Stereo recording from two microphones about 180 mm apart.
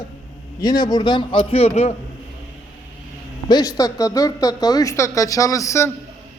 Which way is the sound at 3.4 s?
20° left (ahead or behind).